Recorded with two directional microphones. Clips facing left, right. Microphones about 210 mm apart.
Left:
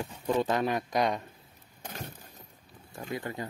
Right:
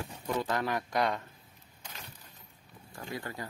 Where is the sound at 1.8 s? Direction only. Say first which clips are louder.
Left 8 dB; 50° left (ahead or behind).